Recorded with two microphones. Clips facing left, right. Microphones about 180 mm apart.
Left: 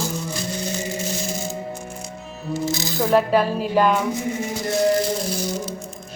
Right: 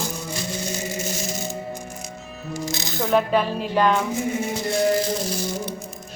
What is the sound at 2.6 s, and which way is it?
Speech, centre (ahead or behind).